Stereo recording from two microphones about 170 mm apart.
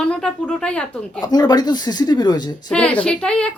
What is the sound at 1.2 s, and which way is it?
A woman's voice, 25° left (ahead or behind).